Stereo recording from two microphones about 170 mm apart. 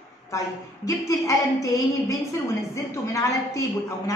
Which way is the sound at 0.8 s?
20° left (ahead or behind).